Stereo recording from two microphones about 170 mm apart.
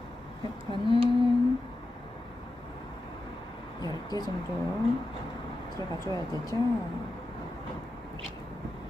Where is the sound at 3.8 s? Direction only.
25° left (ahead or behind).